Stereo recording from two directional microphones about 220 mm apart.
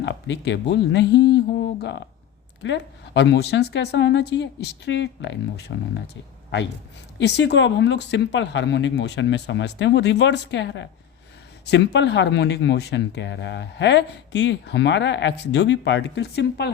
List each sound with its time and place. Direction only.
0.0 s speech: 55° left (ahead or behind)
7.2 s speech: 50° left (ahead or behind)